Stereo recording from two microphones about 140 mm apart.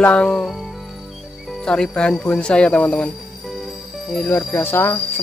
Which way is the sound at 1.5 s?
5° left (ahead or behind).